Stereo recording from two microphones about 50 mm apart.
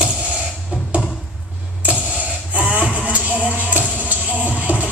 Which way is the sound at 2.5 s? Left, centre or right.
Right.